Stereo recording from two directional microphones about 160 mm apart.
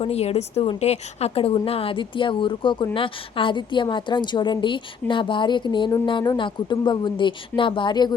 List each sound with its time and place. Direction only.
0.0 s a woman's voice: 40° left (ahead or behind)